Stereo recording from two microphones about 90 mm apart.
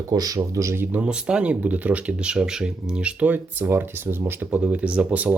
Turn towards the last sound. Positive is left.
turn(degrees=-15)  # may be behind; listen again after turning